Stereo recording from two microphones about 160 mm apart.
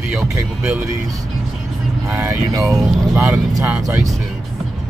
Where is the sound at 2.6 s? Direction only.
Centre (ahead or behind).